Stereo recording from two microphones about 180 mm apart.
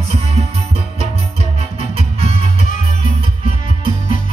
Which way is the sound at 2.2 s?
35° right (ahead or behind).